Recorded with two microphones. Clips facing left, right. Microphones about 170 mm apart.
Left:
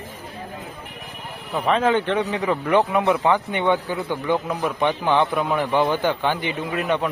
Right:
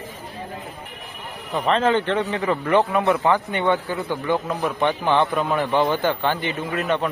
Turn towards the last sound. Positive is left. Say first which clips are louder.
# even
turn(degrees=10)  # may be behind; listen again after turning